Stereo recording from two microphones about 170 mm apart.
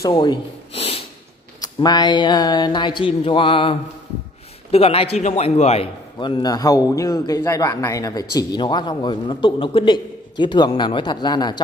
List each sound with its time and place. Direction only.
0.0 s snort: 25° left (ahead or behind)
1.6 s a man's voice: 25° left (ahead or behind)